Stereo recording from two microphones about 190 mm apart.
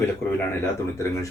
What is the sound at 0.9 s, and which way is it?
Speech, 15° left (ahead or behind).